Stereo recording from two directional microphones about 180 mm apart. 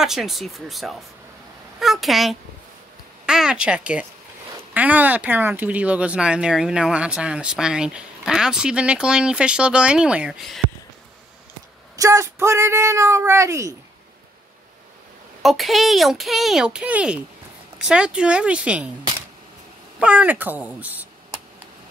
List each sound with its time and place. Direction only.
0.0 s speech: centre (ahead or behind)
12.0 s speech: 15° right (ahead or behind)
15.4 s speech: centre (ahead or behind)
20.0 s speech: 5° right (ahead or behind)